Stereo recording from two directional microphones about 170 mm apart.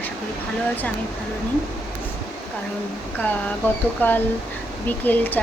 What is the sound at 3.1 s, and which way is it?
Speech, 10° left (ahead or behind).